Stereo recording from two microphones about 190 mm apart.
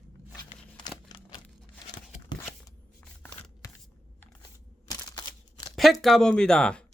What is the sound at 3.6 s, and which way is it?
Scissors, 15° left (ahead or behind).